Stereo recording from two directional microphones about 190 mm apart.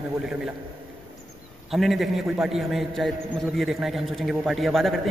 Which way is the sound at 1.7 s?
Centre (ahead or behind).